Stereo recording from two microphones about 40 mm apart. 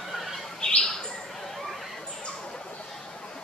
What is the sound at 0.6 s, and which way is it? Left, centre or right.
Bird, left.